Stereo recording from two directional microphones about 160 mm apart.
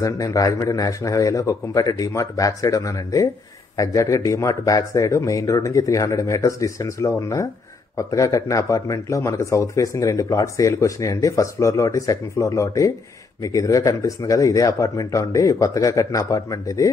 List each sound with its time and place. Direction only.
0.0 s a man's voice: 20° left (ahead or behind)